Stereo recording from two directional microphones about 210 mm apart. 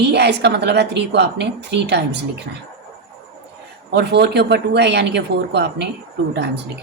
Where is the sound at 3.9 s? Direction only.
55° right (ahead or behind).